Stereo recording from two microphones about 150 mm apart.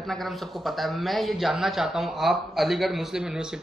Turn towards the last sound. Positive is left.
turn(degrees=-5)  # may be behind; listen again after turning